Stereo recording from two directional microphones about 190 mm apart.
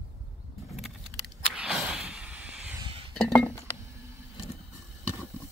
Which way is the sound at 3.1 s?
5° left (ahead or behind).